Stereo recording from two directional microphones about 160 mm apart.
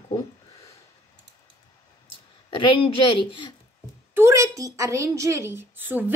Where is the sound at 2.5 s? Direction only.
35° left (ahead or behind).